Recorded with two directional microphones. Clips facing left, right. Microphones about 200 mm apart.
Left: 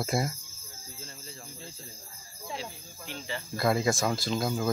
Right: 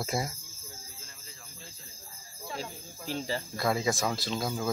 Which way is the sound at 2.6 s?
40° right (ahead or behind).